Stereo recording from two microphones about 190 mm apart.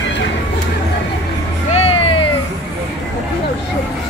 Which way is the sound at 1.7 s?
30° left (ahead or behind).